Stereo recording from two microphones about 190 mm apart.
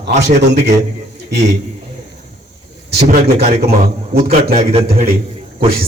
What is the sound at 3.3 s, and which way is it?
Speech, 35° right (ahead or behind).